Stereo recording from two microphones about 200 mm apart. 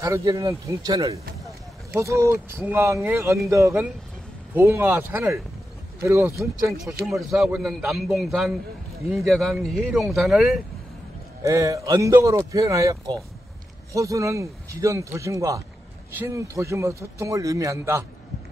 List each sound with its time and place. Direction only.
0.0 s a man's voice: 15° right (ahead or behind)
7.1 s a man's voice: centre (ahead or behind)
11.4 s a man's voice: 15° right (ahead or behind)